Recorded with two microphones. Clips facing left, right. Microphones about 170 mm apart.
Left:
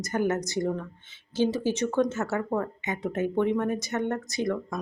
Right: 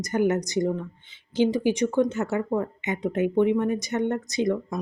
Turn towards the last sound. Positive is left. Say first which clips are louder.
# right 4 dB
turn(degrees=-20)  # may be behind; listen again after turning